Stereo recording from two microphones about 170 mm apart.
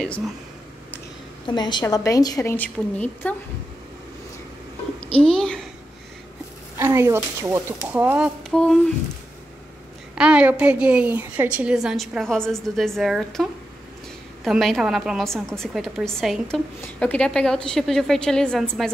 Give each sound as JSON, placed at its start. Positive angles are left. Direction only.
{"t": 0.0, "sound": "a woman's voice", "side_deg": 5}
{"t": 1.5, "sound": "a woman's voice", "side_deg": 25}
{"t": 5.2, "sound": "a woman's voice", "side_deg": 5}
{"t": 6.8, "sound": "speech", "side_deg": -15}
{"t": 8.5, "sound": "speech", "side_deg": 5}
{"t": 10.1, "sound": "a woman's voice", "side_deg": -5}